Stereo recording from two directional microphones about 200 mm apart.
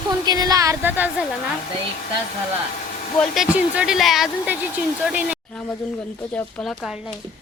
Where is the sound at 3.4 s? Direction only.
5° right (ahead or behind).